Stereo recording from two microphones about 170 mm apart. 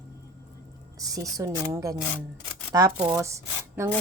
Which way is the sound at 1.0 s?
20° right (ahead or behind).